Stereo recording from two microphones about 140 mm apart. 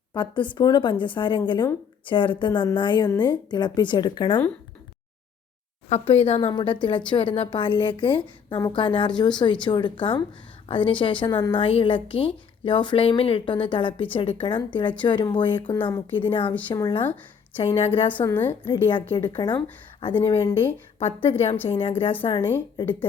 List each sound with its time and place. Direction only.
0.1 s a woman's voice: 35° left (ahead or behind)
5.9 s speech: 45° left (ahead or behind)
6.5 s a woman's voice: 35° left (ahead or behind)
17.7 s speech: 40° left (ahead or behind)
18.3 s a woman's voice: 15° left (ahead or behind)
18.7 s a woman's voice: 40° left (ahead or behind)
20.4 s speech: 20° left (ahead or behind)
21.0 s a woman's voice: 45° left (ahead or behind)
22.3 s a woman's voice: 15° left (ahead or behind)